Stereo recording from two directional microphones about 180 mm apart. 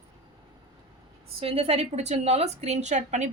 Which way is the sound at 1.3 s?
30° right (ahead or behind).